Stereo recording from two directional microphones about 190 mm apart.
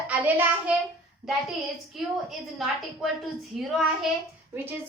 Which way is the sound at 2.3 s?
Centre (ahead or behind).